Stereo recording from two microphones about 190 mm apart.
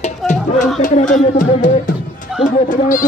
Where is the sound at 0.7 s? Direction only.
40° left (ahead or behind).